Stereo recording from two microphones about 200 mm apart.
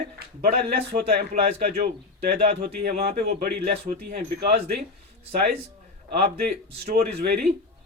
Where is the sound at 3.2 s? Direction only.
50° right (ahead or behind).